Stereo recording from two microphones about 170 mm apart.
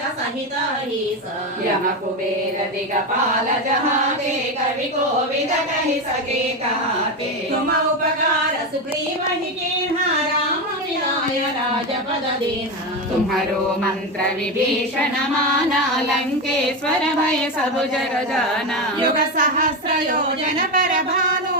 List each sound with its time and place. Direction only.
19.0 s a woman's voice: 55° right (ahead or behind)